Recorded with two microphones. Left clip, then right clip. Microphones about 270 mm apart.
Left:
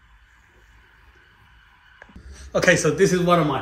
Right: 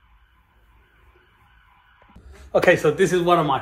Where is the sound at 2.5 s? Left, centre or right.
Right.